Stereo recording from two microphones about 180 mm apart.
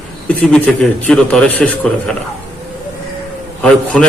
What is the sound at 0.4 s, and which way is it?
A man's voice, 5° left (ahead or behind).